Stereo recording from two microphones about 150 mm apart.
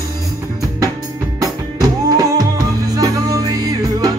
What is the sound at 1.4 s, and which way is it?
Music, 25° right (ahead or behind).